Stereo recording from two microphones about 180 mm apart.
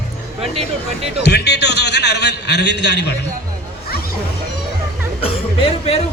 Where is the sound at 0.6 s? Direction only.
35° right (ahead or behind).